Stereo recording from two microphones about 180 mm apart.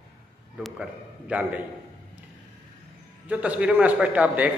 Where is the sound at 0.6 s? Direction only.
5° right (ahead or behind).